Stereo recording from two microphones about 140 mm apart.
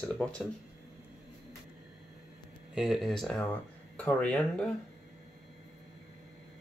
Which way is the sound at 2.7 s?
Centre (ahead or behind).